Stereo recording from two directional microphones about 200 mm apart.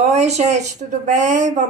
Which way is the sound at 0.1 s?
35° right (ahead or behind).